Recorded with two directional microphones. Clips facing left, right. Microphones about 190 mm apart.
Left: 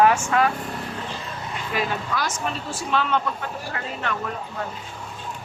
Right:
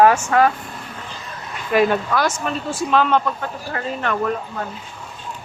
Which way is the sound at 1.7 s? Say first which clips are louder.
Right 10 dB; 60° right (ahead or behind).